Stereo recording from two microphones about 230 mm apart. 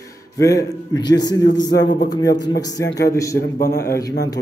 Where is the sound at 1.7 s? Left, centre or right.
Left.